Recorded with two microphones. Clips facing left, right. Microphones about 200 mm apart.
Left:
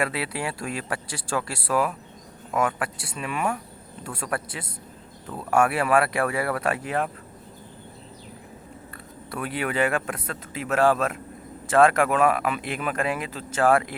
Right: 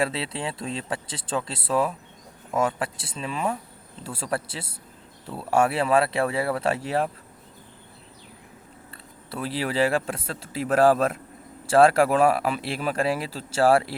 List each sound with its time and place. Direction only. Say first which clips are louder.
0.0 s speech: even; 25° right (ahead or behind)
5.5 s speech: even; 25° right (ahead or behind)
9.3 s speech: right 1 dB; 30° right (ahead or behind)